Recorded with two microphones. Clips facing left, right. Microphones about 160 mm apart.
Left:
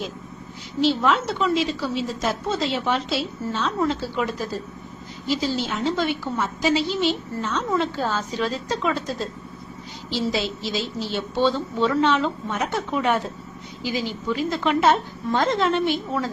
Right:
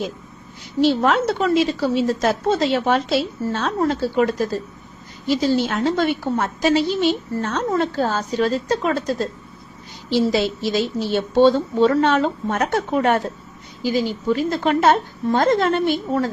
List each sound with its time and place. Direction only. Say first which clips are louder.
0.8 s a woman's voice: right 4 dB; 55° right (ahead or behind)
10.1 s a woman's voice: right 6 dB; 55° right (ahead or behind)